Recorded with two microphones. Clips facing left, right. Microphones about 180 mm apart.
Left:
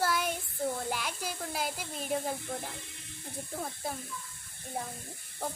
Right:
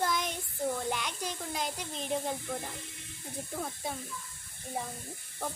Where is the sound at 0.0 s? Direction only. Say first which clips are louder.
Left 1 dB; 10° left (ahead or behind).